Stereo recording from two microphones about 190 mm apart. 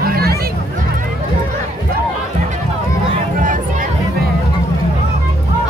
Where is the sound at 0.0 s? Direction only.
50° right (ahead or behind).